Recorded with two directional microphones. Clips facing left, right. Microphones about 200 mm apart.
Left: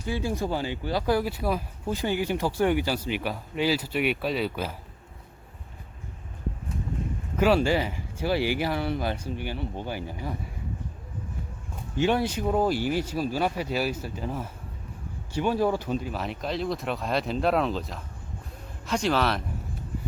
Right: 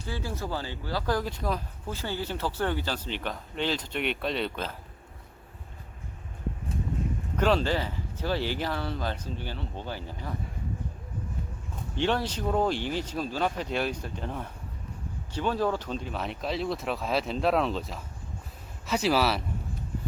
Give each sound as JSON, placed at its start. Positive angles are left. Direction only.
{"t": 0.0, "sound": "speech", "side_deg": 15}
{"t": 7.3, "sound": "speech", "side_deg": 10}
{"t": 11.9, "sound": "speech", "side_deg": 10}